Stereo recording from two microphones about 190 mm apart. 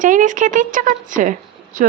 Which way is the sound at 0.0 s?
45° right (ahead or behind).